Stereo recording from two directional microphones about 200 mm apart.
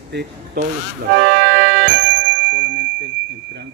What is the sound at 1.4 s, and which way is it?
Music, 60° right (ahead or behind).